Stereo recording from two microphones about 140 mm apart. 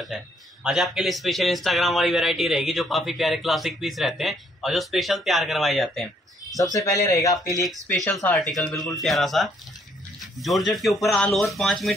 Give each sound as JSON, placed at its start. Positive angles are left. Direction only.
{"t": 0.7, "sound": "speech", "side_deg": 0}
{"t": 6.5, "sound": "speech", "side_deg": 25}
{"t": 8.4, "sound": "speech", "side_deg": 0}